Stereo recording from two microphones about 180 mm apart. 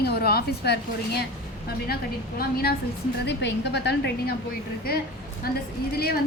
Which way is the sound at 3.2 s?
75° left (ahead or behind).